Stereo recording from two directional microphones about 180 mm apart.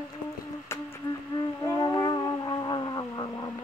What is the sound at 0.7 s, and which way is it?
Insect, 15° left (ahead or behind).